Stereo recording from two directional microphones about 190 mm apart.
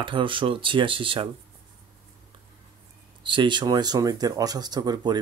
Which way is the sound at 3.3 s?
25° right (ahead or behind).